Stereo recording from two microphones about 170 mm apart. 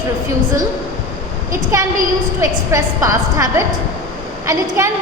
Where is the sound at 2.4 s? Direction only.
20° right (ahead or behind).